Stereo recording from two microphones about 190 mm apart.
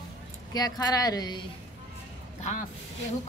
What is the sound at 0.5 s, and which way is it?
Speech, 20° left (ahead or behind).